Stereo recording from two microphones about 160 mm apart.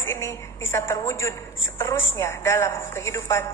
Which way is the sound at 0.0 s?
15° left (ahead or behind).